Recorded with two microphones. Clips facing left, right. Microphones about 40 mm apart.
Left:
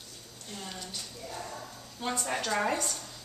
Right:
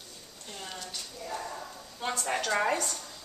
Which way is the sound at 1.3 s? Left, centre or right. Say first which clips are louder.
Right 4 dB; right.